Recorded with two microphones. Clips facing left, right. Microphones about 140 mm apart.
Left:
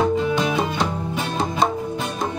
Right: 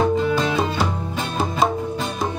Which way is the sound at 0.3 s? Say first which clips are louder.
Even; 15° left (ahead or behind).